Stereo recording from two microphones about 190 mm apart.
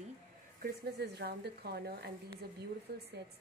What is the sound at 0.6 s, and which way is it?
Speech, 55° right (ahead or behind).